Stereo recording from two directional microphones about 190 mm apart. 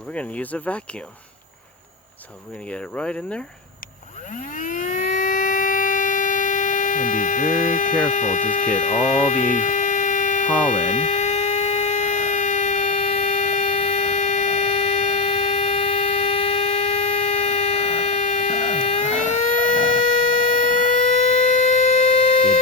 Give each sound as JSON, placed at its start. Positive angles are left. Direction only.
{"t": 0.1, "sound": "speech", "side_deg": 5}
{"t": 2.6, "sound": "speech", "side_deg": 5}
{"t": 4.5, "sound": "civil defense siren", "side_deg": 45}
{"t": 20.9, "sound": "siren", "side_deg": 40}